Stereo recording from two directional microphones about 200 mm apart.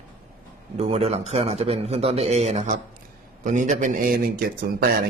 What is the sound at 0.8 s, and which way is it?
A man's voice, 30° right (ahead or behind).